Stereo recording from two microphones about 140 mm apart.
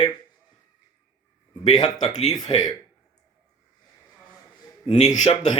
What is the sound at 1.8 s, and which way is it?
Speech, 55° left (ahead or behind).